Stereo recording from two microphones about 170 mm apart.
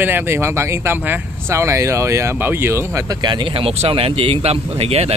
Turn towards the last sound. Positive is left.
turn(degrees=-35)  # may be behind; listen again after turning